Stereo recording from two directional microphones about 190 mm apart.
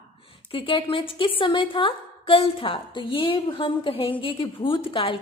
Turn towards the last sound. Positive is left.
turn(degrees=30)  # may be behind; listen again after turning